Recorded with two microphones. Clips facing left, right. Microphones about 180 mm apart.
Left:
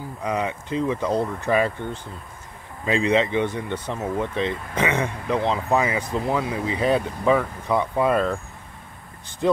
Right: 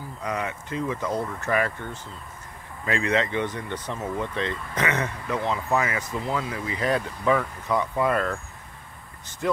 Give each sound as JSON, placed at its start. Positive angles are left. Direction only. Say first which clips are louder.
{"t": 0.3, "sound": "speech", "louder": "left 5 dB", "side_deg": 20}
{"t": 2.8, "sound": "speech", "louder": "left 4 dB", "side_deg": 20}
{"t": 9.4, "sound": "speech", "louder": "left 5 dB", "side_deg": 25}